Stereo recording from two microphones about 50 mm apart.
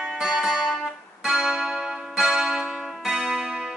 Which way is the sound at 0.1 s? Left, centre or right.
Centre.